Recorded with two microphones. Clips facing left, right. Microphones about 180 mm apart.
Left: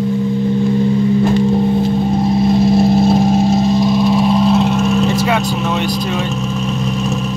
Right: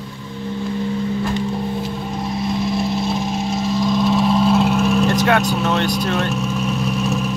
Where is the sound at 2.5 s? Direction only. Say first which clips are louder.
Left 8 dB; 30° left (ahead or behind).